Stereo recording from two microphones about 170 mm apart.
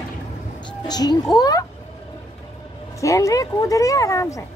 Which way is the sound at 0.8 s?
25° left (ahead or behind).